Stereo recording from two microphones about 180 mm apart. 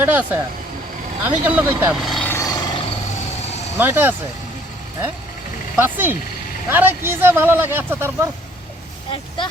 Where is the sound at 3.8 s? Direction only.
10° right (ahead or behind).